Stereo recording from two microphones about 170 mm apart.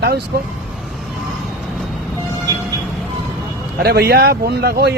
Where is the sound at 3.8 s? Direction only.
70° right (ahead or behind).